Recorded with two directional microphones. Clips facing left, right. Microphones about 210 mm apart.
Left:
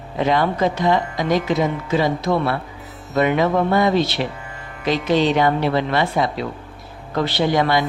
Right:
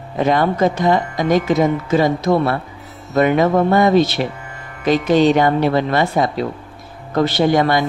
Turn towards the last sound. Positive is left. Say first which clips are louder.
# right 3 dB
turn(degrees=-50)  # may be behind; listen again after turning